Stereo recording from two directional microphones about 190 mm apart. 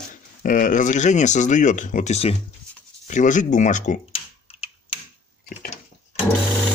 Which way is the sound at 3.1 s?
40° left (ahead or behind).